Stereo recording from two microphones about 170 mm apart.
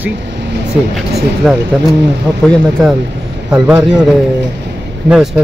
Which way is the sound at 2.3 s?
10° right (ahead or behind).